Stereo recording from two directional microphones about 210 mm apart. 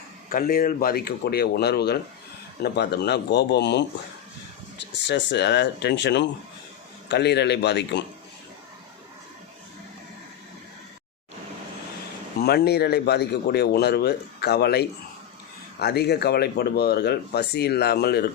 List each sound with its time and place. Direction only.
0.3 s speech: 40° left (ahead or behind)
5.0 s speech: 55° left (ahead or behind)
12.4 s speech: 50° left (ahead or behind)